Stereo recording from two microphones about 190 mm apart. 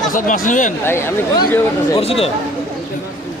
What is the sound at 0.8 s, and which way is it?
Speech, 15° left (ahead or behind).